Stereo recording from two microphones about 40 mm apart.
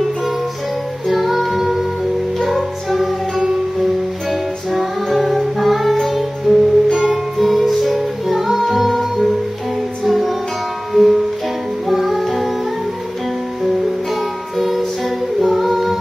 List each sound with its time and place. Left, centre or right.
1.0 s female singing: centre
2.3 s music: centre
10.0 s music: centre
14.6 s music: centre
15.4 s a capella: centre